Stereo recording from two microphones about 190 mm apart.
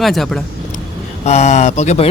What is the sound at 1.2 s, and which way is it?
Speech, 35° left (ahead or behind).